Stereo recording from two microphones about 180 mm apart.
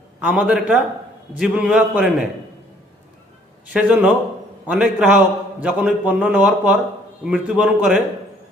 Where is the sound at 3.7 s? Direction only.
5° right (ahead or behind).